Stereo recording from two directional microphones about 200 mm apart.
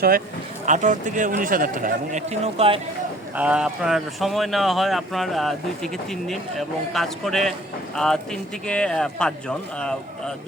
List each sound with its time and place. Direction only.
0.6 s a man's voice: 35° right (ahead or behind)
3.3 s speech: 5° right (ahead or behind)